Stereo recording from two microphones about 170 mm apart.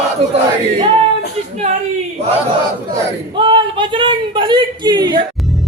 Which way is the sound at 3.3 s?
30° right (ahead or behind).